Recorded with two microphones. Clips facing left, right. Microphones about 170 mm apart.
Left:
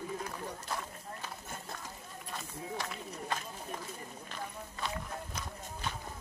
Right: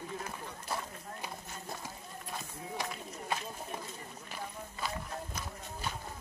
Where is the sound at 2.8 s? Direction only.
10° right (ahead or behind).